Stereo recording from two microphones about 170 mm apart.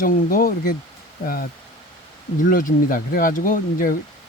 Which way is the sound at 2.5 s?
55° left (ahead or behind).